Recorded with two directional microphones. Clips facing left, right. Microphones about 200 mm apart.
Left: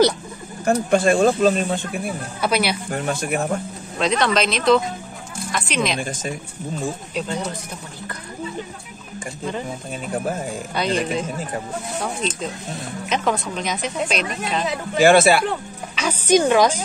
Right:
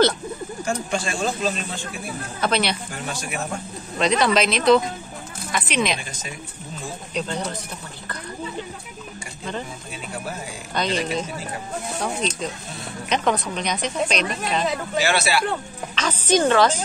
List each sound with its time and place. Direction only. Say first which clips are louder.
0.7 s speech: left 10 dB; 55° left (ahead or behind)
2.4 s speech: left 2 dB; 10° left (ahead or behind)
2.9 s speech: left 7 dB; 55° left (ahead or behind)
4.0 s a woman's voice: even; centre (ahead or behind)
5.9 s speech: left 9 dB; 50° left (ahead or behind)
7.2 s speech: right 1 dB; 10° left (ahead or behind)
10.1 s speech: left 8 dB; 50° left (ahead or behind)
13.1 s a woman's voice: even; centre (ahead or behind)
15.0 s speech: left 9 dB; 50° left (ahead or behind)
15.9 s speech: left 3 dB; 10° left (ahead or behind)